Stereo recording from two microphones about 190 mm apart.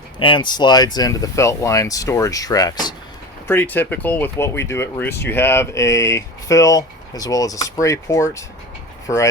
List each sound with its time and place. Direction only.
0.2 s speech: 25° left (ahead or behind)